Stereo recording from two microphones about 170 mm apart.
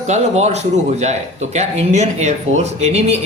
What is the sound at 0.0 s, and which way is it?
Speech, 40° right (ahead or behind).